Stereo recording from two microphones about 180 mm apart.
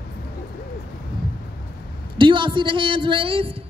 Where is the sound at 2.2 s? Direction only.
25° right (ahead or behind).